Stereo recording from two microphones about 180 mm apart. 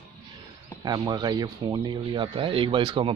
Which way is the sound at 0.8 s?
20° right (ahead or behind).